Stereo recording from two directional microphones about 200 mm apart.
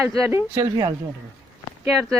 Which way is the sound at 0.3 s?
15° right (ahead or behind).